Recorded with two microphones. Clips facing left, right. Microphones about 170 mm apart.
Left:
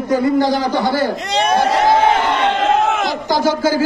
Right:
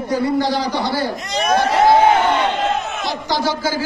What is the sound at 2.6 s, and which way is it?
Battle cry, 90° left.